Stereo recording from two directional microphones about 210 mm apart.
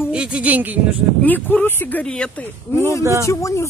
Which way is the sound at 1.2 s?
10° left (ahead or behind).